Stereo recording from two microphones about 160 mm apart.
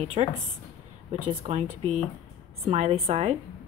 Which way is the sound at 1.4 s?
40° right (ahead or behind).